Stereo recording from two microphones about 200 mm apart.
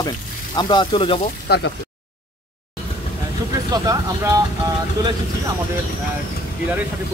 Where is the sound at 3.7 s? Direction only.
15° right (ahead or behind).